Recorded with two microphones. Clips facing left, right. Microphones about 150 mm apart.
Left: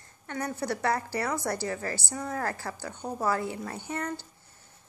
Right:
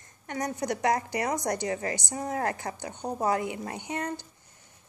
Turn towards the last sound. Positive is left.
turn(degrees=-15)  # may be behind; listen again after turning